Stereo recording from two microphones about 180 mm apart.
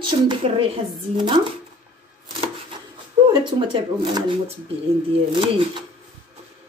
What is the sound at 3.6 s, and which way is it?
Speech, 25° right (ahead or behind).